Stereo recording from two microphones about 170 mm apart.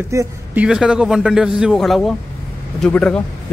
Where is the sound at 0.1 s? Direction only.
20° right (ahead or behind).